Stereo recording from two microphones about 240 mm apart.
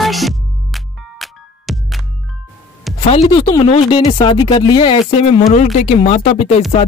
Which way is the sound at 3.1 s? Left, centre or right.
Left.